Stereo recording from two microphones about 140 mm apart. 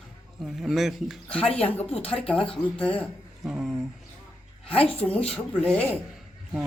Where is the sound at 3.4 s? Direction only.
Centre (ahead or behind).